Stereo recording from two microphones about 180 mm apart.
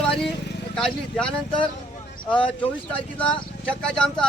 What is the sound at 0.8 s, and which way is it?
Speech, centre (ahead or behind).